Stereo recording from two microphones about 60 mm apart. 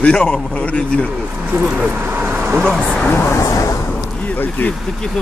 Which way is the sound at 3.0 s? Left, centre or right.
Left.